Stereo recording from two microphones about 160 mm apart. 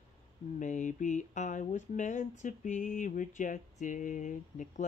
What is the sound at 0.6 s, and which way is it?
Speech, 50° left (ahead or behind).